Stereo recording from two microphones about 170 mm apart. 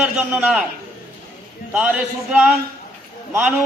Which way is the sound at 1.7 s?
5° right (ahead or behind).